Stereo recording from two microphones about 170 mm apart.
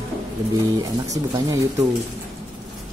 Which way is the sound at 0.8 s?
20° right (ahead or behind).